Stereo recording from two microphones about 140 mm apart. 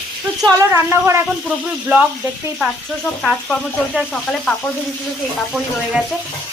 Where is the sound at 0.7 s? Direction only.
20° right (ahead or behind).